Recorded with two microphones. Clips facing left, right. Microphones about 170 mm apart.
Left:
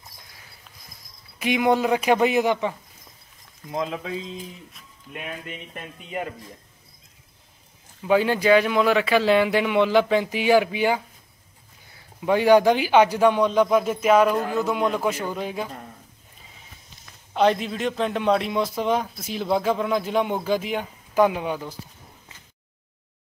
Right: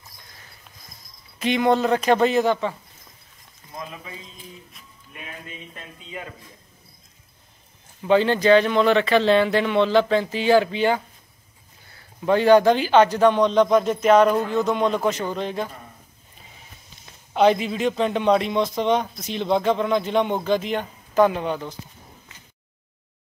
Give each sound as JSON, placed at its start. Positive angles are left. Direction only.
{"t": 1.4, "sound": "speech", "side_deg": 10}
{"t": 3.7, "sound": "speech", "side_deg": 90}
{"t": 5.8, "sound": "speech", "side_deg": 60}
{"t": 8.1, "sound": "speech", "side_deg": 10}
{"t": 17.3, "sound": "a man's voice", "side_deg": 0}